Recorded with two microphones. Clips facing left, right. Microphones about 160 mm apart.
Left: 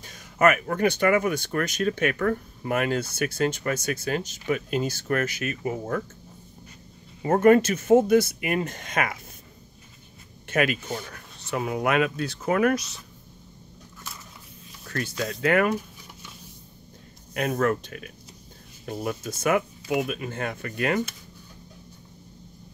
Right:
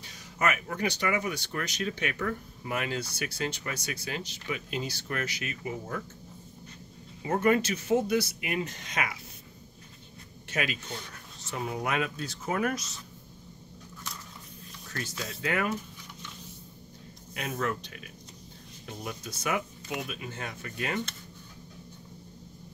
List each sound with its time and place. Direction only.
0.0 s speech: 55° left (ahead or behind)
7.2 s speech: 50° left (ahead or behind)
10.5 s speech: 55° left (ahead or behind)
11.5 s speech: 70° left (ahead or behind)
14.9 s speech: 65° left (ahead or behind)
17.3 s speech: 55° left (ahead or behind)